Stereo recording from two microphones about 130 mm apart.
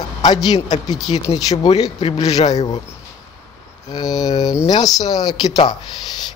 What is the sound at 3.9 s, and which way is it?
A man's voice, 30° left (ahead or behind).